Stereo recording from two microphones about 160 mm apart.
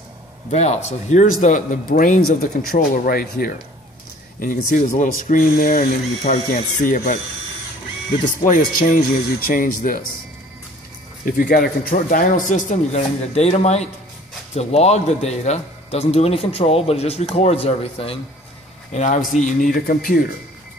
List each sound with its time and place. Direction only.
0.5 s a man's voice: 45° left (ahead or behind)
8.5 s speech: 55° left (ahead or behind)
11.2 s a man's voice: 65° left (ahead or behind); by 19.7 s 50° left (ahead or behind)
19.7 s speech: 65° left (ahead or behind)